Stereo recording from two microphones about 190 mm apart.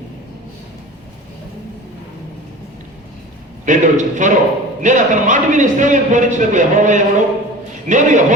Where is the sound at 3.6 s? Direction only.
40° right (ahead or behind).